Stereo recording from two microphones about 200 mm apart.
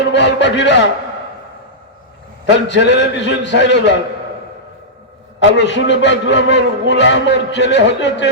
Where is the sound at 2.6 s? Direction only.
60° left (ahead or behind).